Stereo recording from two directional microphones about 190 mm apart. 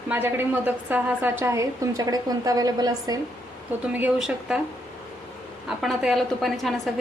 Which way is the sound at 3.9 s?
10° right (ahead or behind).